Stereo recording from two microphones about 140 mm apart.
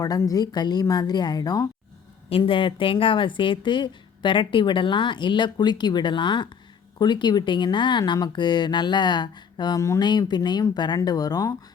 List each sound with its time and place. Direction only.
0.0 s a woman's voice: 25° left (ahead or behind)